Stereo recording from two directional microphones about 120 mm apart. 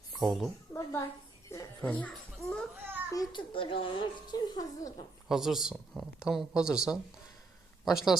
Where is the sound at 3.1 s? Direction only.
45° left (ahead or behind).